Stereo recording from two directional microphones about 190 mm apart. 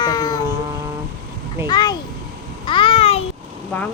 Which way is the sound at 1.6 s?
20° left (ahead or behind).